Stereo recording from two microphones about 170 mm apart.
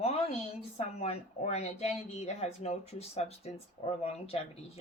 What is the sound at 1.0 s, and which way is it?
Speech, 40° left (ahead or behind).